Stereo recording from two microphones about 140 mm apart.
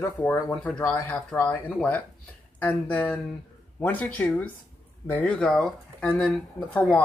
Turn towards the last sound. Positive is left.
turn(degrees=10)  # may be behind; listen again after turning